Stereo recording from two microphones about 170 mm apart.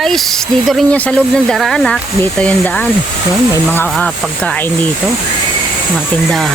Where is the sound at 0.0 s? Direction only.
Centre (ahead or behind).